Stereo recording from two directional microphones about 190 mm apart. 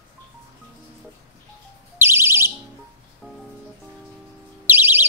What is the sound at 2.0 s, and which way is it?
Music, 15° right (ahead or behind).